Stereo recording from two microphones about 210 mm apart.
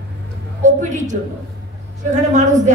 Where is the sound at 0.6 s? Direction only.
35° right (ahead or behind).